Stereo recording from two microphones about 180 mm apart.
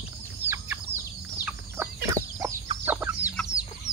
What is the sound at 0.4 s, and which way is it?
Chicken, 10° right (ahead or behind).